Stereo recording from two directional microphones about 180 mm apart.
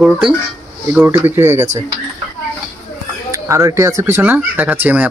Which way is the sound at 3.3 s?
15° right (ahead or behind).